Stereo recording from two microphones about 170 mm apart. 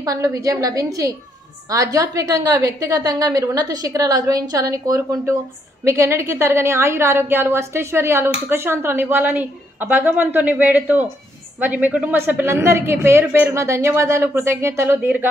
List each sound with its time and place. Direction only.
0.0 s a woman's voice: 20° right (ahead or behind)